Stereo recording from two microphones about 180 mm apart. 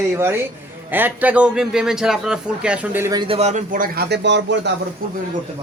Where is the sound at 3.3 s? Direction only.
40° right (ahead or behind); by 4.7 s 80° right.